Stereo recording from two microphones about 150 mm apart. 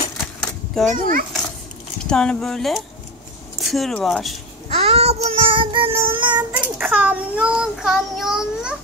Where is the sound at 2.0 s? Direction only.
5° left (ahead or behind).